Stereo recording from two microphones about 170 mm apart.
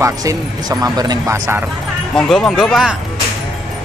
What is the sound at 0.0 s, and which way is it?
Speech, 20° right (ahead or behind).